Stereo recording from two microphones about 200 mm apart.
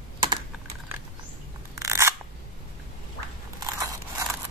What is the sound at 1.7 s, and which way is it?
Scissors, 15° right (ahead or behind).